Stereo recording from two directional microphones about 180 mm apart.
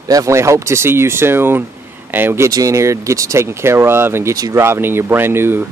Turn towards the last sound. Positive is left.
turn(degrees=-10)  # may be behind; listen again after turning